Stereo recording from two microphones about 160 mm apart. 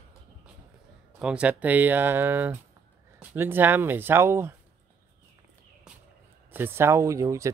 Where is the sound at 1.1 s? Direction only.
5° right (ahead or behind).